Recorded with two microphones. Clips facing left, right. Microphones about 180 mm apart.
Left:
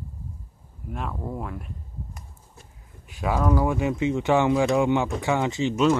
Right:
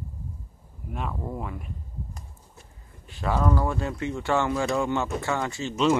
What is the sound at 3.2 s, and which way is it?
Speech, 10° left (ahead or behind).